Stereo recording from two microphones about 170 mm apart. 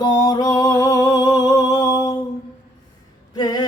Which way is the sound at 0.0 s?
25° left (ahead or behind).